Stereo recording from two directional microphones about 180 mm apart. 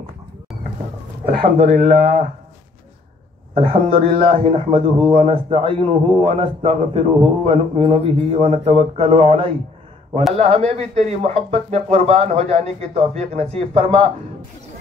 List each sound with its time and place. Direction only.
1.2 s speech: 55° right (ahead or behind)
1.7 s a man's voice: 40° right (ahead or behind)
3.5 s a man's voice: 30° right (ahead or behind)